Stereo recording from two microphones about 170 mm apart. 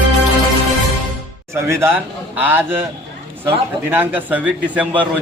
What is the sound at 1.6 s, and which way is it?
A man's voice, 15° right (ahead or behind).